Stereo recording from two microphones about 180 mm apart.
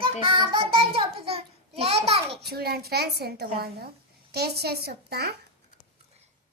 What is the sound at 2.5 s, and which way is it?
A woman's voice, 60° right (ahead or behind).